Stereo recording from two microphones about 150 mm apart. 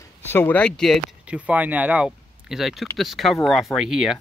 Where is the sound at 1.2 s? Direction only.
10° right (ahead or behind).